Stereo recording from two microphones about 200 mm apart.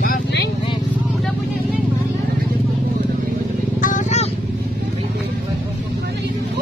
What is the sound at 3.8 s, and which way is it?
Vehicle, 40° left (ahead or behind).